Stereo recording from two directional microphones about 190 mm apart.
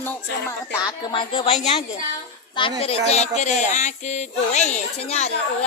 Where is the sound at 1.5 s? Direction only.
35° left (ahead or behind).